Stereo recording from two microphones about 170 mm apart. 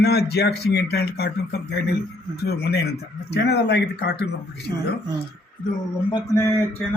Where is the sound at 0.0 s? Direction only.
70° left (ahead or behind).